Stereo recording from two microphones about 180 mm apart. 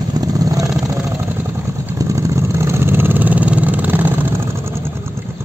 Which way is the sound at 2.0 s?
15° right (ahead or behind).